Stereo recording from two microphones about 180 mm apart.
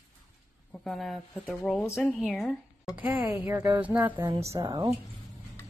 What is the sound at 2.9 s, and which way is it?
A woman's voice, 10° right (ahead or behind).